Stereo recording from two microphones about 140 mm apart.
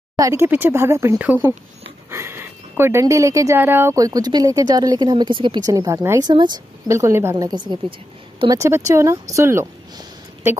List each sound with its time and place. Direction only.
0.1 s speech: 25° right (ahead or behind)
2.0 s a sound: 20° right (ahead or behind)
2.8 s speech: 20° right (ahead or behind)
6.9 s speech: 20° right (ahead or behind)
8.5 s speech: 20° right (ahead or behind)